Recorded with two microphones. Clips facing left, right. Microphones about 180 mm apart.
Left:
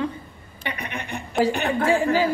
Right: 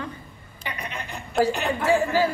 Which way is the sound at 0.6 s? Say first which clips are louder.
Left 3 dB; 65° left (ahead or behind).